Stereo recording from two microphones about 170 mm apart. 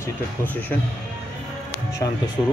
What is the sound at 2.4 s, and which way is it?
Speech, 25° left (ahead or behind).